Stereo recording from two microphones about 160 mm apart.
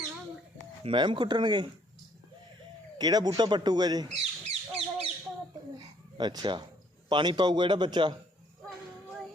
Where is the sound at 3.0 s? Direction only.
25° right (ahead or behind).